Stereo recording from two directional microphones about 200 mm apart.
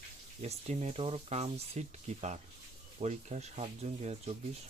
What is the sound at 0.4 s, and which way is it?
Speech, 35° right (ahead or behind).